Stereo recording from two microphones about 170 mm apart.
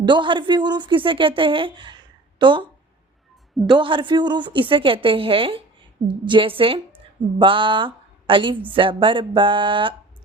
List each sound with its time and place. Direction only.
0.0 s speech: 30° right (ahead or behind)
3.7 s a woman's voice: 30° right (ahead or behind)
7.3 s a sound: 30° right (ahead or behind)
8.7 s a woman's voice: 30° right (ahead or behind)